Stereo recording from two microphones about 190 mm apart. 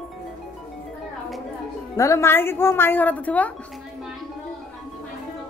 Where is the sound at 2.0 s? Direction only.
15° left (ahead or behind).